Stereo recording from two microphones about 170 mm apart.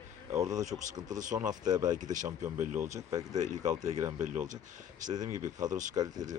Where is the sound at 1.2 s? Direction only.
45° right (ahead or behind).